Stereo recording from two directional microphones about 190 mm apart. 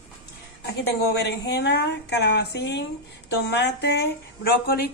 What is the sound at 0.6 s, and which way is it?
A woman's voice, 60° left (ahead or behind).